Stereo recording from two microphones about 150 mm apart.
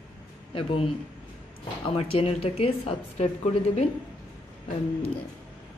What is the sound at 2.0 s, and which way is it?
Speech, 40° left (ahead or behind).